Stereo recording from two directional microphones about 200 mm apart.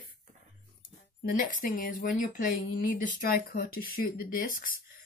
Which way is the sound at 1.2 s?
45° left (ahead or behind).